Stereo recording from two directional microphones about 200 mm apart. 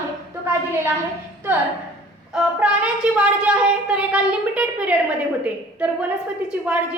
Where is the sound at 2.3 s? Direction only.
5° right (ahead or behind).